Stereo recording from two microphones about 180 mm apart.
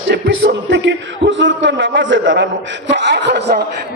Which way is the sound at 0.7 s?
85° right.